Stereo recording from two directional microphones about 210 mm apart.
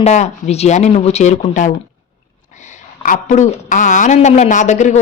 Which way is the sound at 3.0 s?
40° left (ahead or behind).